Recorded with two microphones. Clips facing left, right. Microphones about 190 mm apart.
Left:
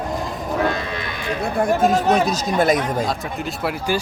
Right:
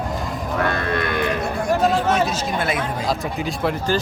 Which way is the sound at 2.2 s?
40° left (ahead or behind).